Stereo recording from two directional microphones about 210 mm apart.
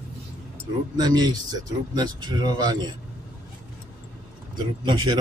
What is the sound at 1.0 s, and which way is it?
Speech, 20° right (ahead or behind).